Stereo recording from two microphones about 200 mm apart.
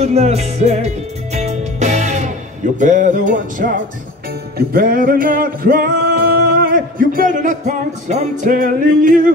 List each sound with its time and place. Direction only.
0.0 s music: 35° right (ahead or behind)